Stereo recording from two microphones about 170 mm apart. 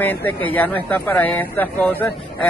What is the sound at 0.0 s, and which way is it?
Speech, 10° left (ahead or behind).